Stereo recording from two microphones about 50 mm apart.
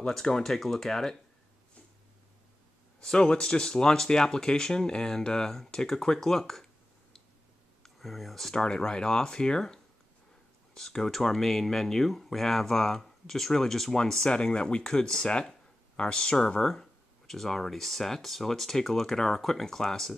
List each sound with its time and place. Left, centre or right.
0.0 s speech: centre
3.0 s speech: centre
7.8 s speech: centre